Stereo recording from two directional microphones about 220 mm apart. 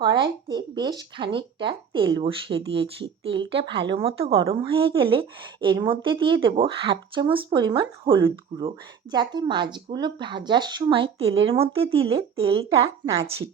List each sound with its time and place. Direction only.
0.0 s speech: 20° right (ahead or behind)